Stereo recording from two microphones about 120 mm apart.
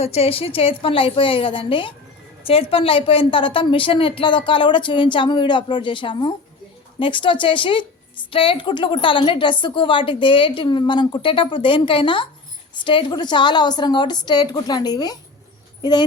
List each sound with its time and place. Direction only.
0.0 s a woman's voice: 60° left (ahead or behind); by 16.0 s 35° left (ahead or behind)